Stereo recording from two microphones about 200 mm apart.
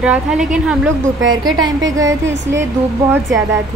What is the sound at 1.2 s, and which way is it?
Speech, 75° right (ahead or behind).